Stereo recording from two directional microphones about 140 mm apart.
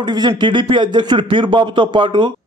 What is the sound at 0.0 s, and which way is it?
A man's voice, 30° right (ahead or behind).